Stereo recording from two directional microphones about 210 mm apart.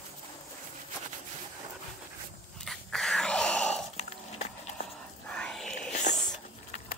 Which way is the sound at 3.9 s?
30° left (ahead or behind).